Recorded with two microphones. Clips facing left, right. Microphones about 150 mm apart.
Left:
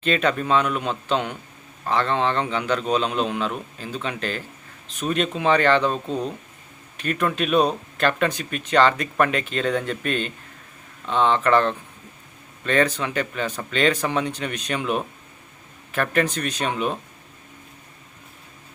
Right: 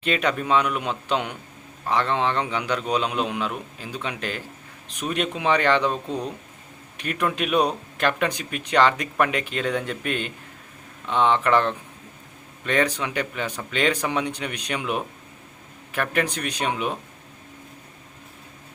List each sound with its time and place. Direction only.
0.0 s a man's voice: 15° right (ahead or behind)